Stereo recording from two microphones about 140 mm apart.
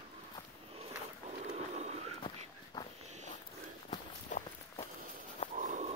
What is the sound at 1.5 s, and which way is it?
Horse, 50° right (ahead or behind).